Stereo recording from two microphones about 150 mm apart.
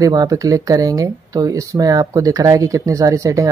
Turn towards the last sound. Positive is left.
turn(degrees=-20)  # may be behind; listen again after turning